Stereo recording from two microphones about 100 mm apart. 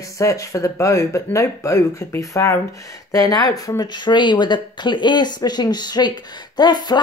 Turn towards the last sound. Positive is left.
turn(degrees=45)  # may be behind; listen again after turning